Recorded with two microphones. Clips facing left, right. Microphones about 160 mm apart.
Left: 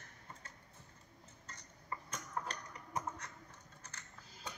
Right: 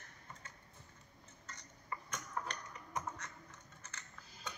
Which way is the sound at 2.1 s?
30° left (ahead or behind).